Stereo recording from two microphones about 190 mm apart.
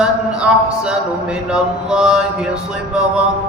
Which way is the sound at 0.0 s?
5° right (ahead or behind).